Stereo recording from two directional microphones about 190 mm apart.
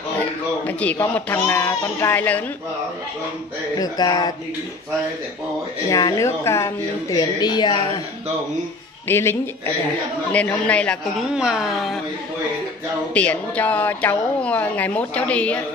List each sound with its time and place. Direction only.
0.2 s a child's voice: 10° left (ahead or behind)
3.7 s a woman's voice: 20° left (ahead or behind)
5.9 s a woman's voice: 20° left (ahead or behind)
9.0 s a woman's voice: 10° left (ahead or behind)
13.1 s a woman's voice: 5° left (ahead or behind)